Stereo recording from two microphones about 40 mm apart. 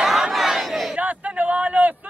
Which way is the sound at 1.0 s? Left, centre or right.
Right.